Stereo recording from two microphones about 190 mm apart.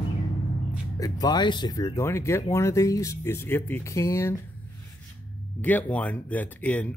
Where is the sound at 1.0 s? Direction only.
20° left (ahead or behind).